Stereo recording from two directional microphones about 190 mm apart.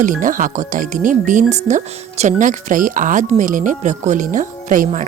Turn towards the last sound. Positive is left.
turn(degrees=-45)  # may be behind; listen again after turning